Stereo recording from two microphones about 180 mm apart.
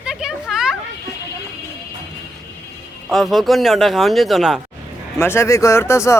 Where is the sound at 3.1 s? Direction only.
Centre (ahead or behind).